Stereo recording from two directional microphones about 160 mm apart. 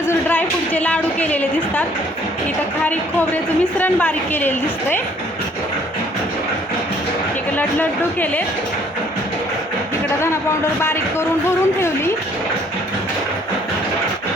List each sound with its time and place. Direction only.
0.1 s a woman's voice: 10° left (ahead or behind)
2.8 s a woman's voice: 10° left (ahead or behind)
7.5 s a woman's voice: 10° left (ahead or behind)
10.8 s a woman's voice: 15° left (ahead or behind)